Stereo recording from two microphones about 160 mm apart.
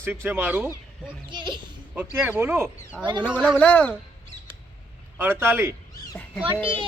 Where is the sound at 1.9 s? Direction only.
10° right (ahead or behind).